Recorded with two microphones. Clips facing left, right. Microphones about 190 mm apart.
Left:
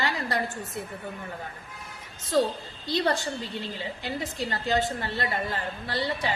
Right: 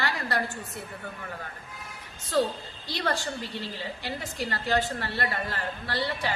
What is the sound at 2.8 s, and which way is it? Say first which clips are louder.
A woman's voice: left 4 dB; 20° left (ahead or behind).